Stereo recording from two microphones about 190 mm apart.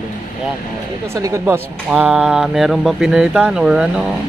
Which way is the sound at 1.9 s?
Centre (ahead or behind).